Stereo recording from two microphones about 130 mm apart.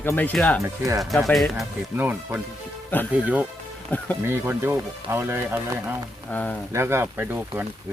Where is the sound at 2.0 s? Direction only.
15° right (ahead or behind).